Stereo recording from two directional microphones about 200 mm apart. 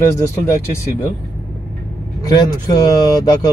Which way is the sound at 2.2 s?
20° left (ahead or behind).